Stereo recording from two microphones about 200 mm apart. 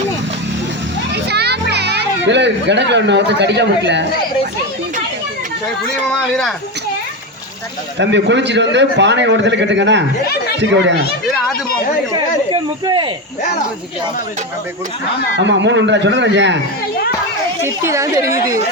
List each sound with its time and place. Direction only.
1.1 s children playing: 55° right (ahead or behind)
7.9 s a man's voice: 65° right (ahead or behind)
12.8 s speech: 25° right (ahead or behind)
15.4 s a man's voice: 65° right (ahead or behind)
17.6 s speech: 15° right (ahead or behind)